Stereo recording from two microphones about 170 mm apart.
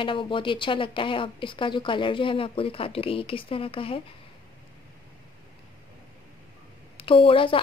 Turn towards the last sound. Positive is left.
turn(degrees=30)  # may be behind; listen again after turning